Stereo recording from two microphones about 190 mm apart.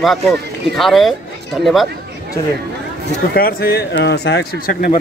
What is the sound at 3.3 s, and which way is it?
Speech, 50° left (ahead or behind).